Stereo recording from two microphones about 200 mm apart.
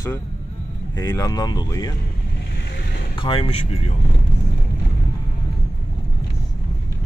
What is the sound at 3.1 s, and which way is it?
Speech, 25° left (ahead or behind).